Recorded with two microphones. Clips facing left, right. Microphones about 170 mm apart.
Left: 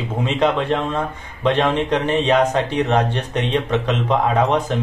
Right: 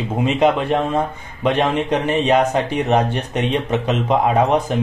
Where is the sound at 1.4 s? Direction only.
15° right (ahead or behind).